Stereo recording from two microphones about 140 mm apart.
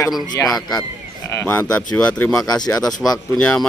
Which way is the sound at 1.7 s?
10° left (ahead or behind).